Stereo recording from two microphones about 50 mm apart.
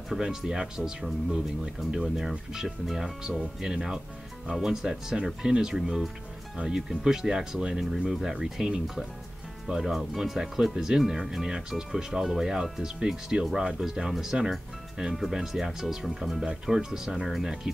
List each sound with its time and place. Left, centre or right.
0.1 s speech: centre